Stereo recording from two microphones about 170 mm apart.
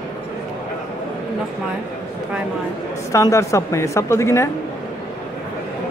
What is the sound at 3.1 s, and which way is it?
A woman's voice, 15° left (ahead or behind).